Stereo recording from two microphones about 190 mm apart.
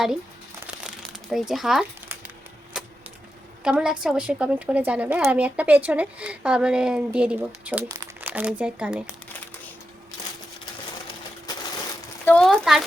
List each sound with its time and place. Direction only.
0.9 s crumpling: centre (ahead or behind)
3.6 s a woman's voice: 5° right (ahead or behind)
7.9 s crumpling: 20° right (ahead or behind)
8.3 s speech: 5° right (ahead or behind)
11.5 s crushing: 20° left (ahead or behind)
12.2 s a sound: 5° left (ahead or behind)